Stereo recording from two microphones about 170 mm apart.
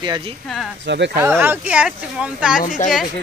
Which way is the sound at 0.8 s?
90° right.